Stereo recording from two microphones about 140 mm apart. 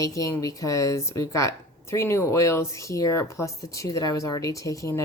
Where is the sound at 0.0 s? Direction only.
25° left (ahead or behind).